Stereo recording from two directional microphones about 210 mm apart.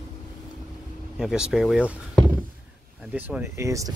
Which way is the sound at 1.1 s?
Centre (ahead or behind).